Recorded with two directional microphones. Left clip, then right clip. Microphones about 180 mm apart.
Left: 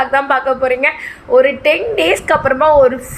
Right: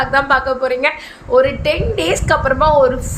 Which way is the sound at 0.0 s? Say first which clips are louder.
Left 1 dB; 5° left (ahead or behind).